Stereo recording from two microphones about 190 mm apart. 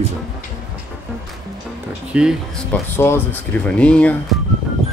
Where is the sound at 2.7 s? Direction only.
10° left (ahead or behind).